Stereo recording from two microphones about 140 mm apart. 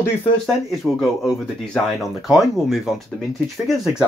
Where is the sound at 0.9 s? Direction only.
Centre (ahead or behind).